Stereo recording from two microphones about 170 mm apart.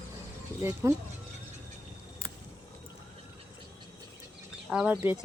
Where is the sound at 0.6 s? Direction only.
15° right (ahead or behind).